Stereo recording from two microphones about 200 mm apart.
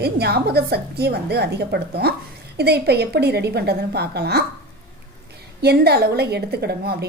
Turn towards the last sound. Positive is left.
turn(degrees=-55)  # may be behind; listen again after turning